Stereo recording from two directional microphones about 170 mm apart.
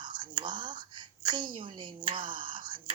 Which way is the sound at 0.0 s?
25° right (ahead or behind).